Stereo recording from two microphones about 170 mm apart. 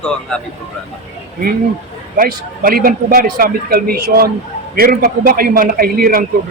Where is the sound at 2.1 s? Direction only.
55° right (ahead or behind).